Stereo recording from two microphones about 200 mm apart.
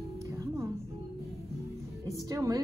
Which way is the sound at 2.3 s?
20° right (ahead or behind).